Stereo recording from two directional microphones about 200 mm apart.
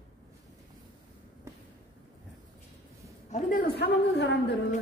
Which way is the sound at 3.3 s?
40° left (ahead or behind).